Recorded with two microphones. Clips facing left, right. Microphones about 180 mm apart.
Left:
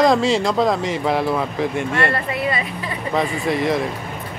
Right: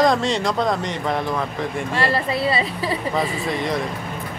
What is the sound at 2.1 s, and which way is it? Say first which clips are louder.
Speech: right 2 dB; 30° right (ahead or behind).